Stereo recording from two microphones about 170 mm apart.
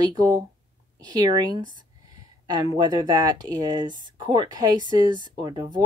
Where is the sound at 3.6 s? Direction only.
25° right (ahead or behind).